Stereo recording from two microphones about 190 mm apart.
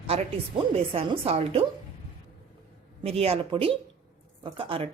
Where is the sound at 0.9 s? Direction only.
30° right (ahead or behind).